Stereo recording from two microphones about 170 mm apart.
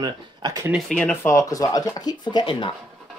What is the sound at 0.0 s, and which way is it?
Speech, 20° right (ahead or behind).